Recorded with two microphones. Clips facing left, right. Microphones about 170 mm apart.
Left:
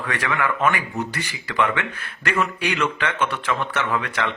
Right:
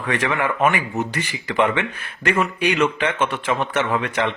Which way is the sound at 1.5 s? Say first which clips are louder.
Right 3 dB; 25° right (ahead or behind).